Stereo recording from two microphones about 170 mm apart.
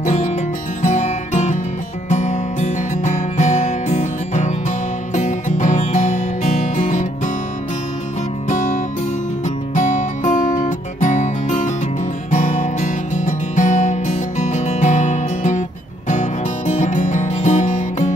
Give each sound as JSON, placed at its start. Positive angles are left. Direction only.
{"t": 0.0, "sound": "music", "side_deg": 45}
{"t": 8.5, "sound": "music", "side_deg": 45}